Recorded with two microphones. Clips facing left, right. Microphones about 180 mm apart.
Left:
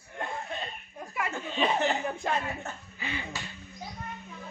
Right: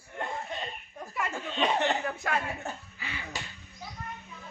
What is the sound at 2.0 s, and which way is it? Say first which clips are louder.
Speech: left 1 dB; 25° left (ahead or behind).